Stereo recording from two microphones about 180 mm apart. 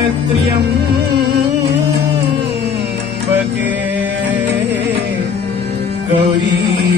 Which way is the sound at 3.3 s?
10° right (ahead or behind).